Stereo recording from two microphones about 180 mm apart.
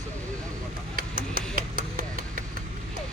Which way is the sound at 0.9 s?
50° right (ahead or behind).